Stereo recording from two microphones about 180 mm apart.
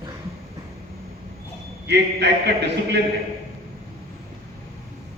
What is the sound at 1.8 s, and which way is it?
A man's voice, 70° right (ahead or behind).